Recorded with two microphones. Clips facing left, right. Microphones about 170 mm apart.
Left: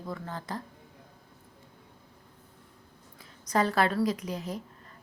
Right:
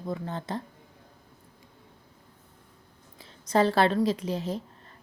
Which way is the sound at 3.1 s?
30° right (ahead or behind).